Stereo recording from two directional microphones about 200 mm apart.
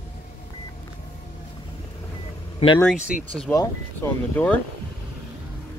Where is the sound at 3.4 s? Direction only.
10° left (ahead or behind).